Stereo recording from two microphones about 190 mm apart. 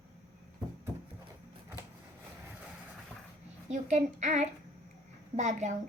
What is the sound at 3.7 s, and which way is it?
A woman's voice, 40° right (ahead or behind).